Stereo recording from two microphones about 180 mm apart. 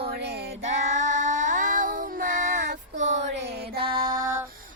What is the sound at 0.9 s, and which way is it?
Child singing, 45° right (ahead or behind).